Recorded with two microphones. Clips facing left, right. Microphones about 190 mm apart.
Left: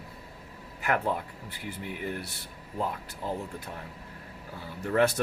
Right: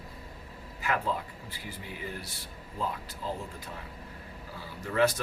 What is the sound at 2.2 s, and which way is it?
Speech, 65° left (ahead or behind).